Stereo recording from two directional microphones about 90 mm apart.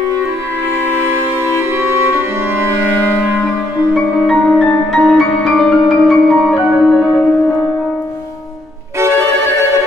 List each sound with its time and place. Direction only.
1.6 s music: 25° right (ahead or behind)
4.3 s music: 5° left (ahead or behind)